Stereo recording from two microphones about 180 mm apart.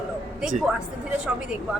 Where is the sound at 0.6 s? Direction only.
Centre (ahead or behind).